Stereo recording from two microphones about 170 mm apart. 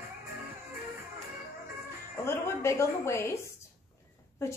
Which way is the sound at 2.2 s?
15° left (ahead or behind).